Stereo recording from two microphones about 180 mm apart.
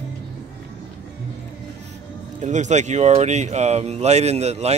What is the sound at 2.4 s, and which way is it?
Speech, 40° right (ahead or behind).